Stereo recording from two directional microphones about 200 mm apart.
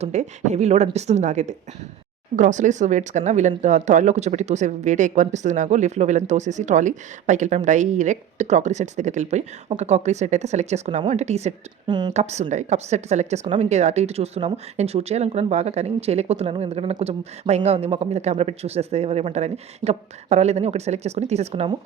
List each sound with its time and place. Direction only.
0.0 s speech: 35° right (ahead or behind)
12.1 s speech: 35° right (ahead or behind)